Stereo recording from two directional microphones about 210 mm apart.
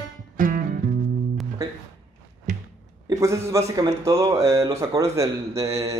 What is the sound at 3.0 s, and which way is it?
A man's voice, 15° right (ahead or behind).